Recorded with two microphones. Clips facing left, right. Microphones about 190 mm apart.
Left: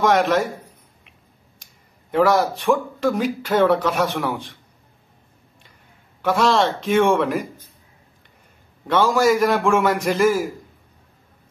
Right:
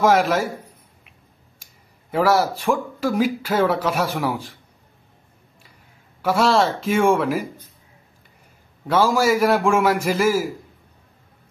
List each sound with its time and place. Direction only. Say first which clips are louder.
0.0 s a man's voice: even; 5° right (ahead or behind)
1.6 s speech: even; 5° right (ahead or behind)
6.2 s a man's voice: even; 5° right (ahead or behind)
8.8 s a man's voice: left 1 dB; 5° right (ahead or behind)